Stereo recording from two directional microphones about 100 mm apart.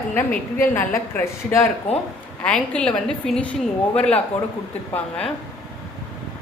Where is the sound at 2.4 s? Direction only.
10° left (ahead or behind).